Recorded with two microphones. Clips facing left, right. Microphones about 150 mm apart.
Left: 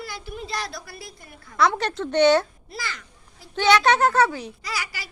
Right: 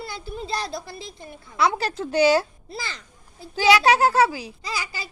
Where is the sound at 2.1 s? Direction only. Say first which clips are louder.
Left 1 dB; 10° right (ahead or behind).